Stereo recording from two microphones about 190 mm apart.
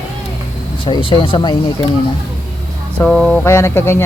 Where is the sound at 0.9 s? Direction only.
25° left (ahead or behind).